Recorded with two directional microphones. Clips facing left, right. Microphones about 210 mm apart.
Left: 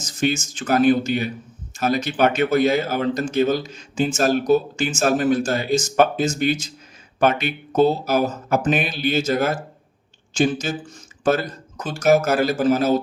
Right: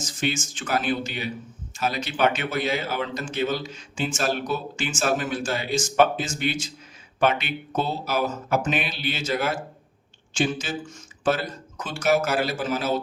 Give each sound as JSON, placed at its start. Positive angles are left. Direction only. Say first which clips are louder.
{"t": 0.2, "sound": "speech", "louder": "left 6 dB", "side_deg": 40}